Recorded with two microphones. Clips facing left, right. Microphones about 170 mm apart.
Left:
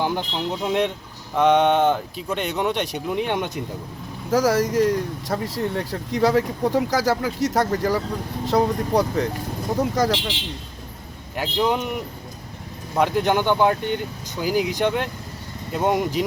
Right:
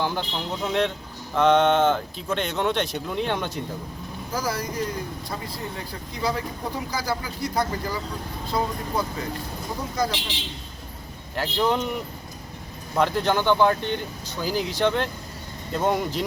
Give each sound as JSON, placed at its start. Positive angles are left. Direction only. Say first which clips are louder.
{"t": 0.0, "sound": "speech", "louder": "left 3 dB", "side_deg": 15}
{"t": 4.3, "sound": "speech", "louder": "left 10 dB", "side_deg": 85}
{"t": 11.3, "sound": "speech", "louder": "left 1 dB", "side_deg": 15}
{"t": 13.0, "sound": "speech", "louder": "left 2 dB", "side_deg": 15}